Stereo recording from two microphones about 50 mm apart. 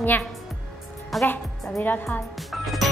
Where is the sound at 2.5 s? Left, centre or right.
Centre.